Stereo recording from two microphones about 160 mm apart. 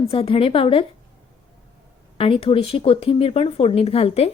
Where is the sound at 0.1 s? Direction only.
35° left (ahead or behind).